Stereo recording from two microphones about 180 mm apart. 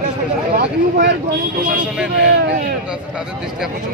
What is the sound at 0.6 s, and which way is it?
Speech, 65° right (ahead or behind).